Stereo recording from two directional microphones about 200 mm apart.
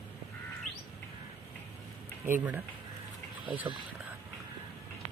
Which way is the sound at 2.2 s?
10° right (ahead or behind).